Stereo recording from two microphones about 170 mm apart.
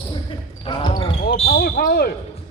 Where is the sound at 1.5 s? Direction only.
60° left (ahead or behind).